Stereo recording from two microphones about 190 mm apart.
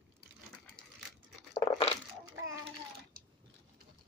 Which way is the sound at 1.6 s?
20° left (ahead or behind).